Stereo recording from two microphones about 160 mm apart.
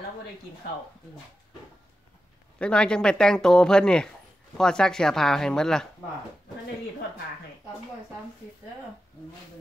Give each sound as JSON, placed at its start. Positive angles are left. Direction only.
{"t": 2.6, "sound": "speech", "side_deg": 5}